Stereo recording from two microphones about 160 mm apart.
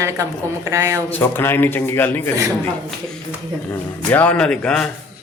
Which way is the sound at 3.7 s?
10° left (ahead or behind).